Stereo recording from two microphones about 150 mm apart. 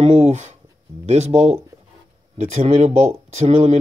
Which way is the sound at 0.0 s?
45° right (ahead or behind).